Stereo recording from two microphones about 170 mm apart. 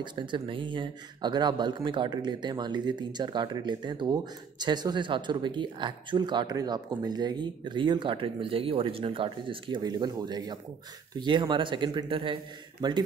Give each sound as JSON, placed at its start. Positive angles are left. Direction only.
{"t": 0.0, "sound": "speech", "side_deg": -25}